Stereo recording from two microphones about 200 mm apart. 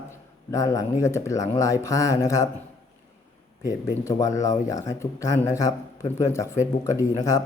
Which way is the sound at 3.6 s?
15° left (ahead or behind).